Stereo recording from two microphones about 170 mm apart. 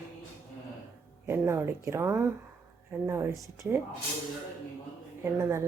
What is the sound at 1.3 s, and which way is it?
A woman's voice, 15° right (ahead or behind).